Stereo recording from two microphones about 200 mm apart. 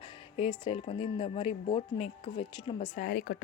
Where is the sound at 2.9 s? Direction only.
45° left (ahead or behind).